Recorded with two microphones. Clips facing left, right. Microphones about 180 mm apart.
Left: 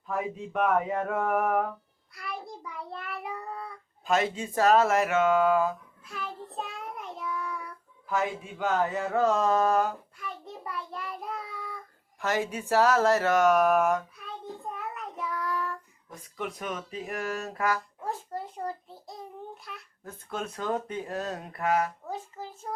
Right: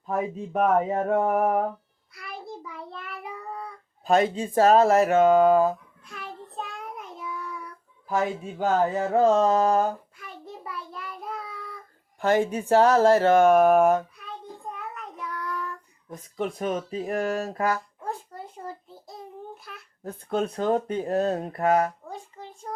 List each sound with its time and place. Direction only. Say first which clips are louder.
0.1 s speech: right 4 dB; 30° right (ahead or behind)
2.1 s a child's voice: left 2 dB; centre (ahead or behind)
2.6 s child singing: even; centre (ahead or behind)
4.0 s speech: right 5 dB; 35° right (ahead or behind)
6.1 s child singing: left 1 dB; centre (ahead or behind)
8.1 s speech: right 4 dB; 40° right (ahead or behind)
10.7 s child singing: left 2 dB; centre (ahead or behind)
12.2 s speech: right 7 dB; 30° right (ahead or behind)
14.7 s child singing: right 1 dB; centre (ahead or behind)
16.0 s speech: right 6 dB; 30° right (ahead or behind)
18.0 s a sound: even; centre (ahead or behind)
20.1 s speech: right 9 dB; 30° right (ahead or behind)
22.1 s a sound: left 2 dB; centre (ahead or behind)